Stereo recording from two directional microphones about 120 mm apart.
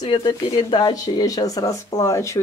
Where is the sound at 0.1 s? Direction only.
35° left (ahead or behind).